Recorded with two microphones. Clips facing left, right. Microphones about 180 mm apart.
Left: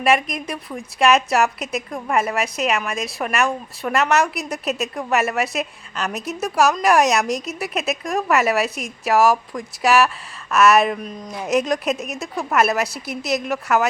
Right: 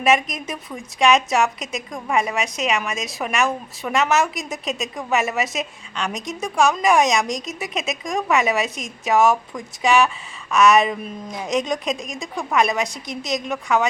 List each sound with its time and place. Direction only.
0.0 s a woman's voice: centre (ahead or behind)